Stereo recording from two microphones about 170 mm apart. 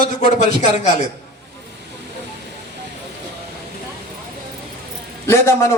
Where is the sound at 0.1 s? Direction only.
45° left (ahead or behind).